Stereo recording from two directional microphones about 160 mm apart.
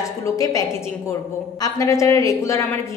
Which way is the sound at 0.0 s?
20° left (ahead or behind).